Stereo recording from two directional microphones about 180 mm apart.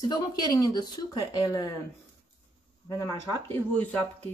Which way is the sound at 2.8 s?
15° left (ahead or behind).